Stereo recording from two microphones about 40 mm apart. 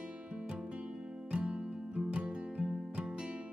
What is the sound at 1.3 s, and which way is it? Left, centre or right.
Music, right.